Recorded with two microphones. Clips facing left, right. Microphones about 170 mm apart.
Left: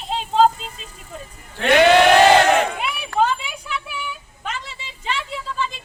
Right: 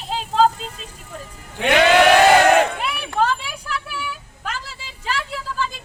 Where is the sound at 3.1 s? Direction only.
Centre (ahead or behind).